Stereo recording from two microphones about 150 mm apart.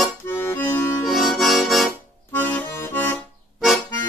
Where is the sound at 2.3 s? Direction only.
10° left (ahead or behind).